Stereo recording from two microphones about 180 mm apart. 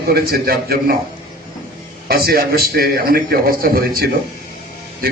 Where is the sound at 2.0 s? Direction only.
60° right (ahead or behind).